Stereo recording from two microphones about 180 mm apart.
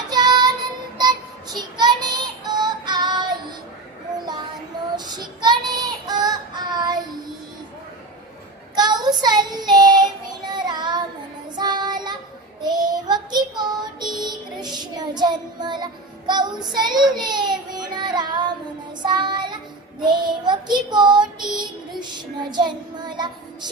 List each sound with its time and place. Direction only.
0.1 s child singing: 25° right (ahead or behind)
1.5 s child singing: 25° right (ahead or behind)
4.1 s a sound: 25° right (ahead or behind)
4.9 s child singing: 20° right (ahead or behind)
8.7 s child singing: 25° right (ahead or behind)